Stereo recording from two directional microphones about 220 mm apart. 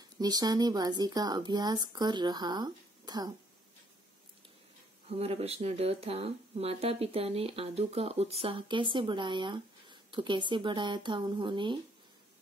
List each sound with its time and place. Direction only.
0.2 s speech: 20° right (ahead or behind)
5.1 s speech: 30° right (ahead or behind)